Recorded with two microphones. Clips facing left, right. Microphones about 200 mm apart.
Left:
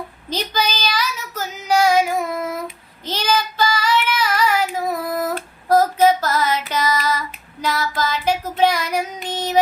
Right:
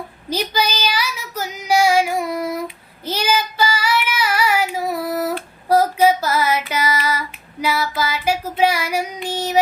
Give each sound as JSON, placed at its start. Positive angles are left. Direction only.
{"t": 0.3, "sound": "female singing", "side_deg": -10}
{"t": 3.0, "sound": "child singing", "side_deg": -10}